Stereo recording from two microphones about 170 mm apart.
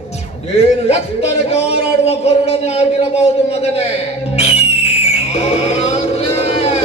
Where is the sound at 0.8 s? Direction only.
35° left (ahead or behind).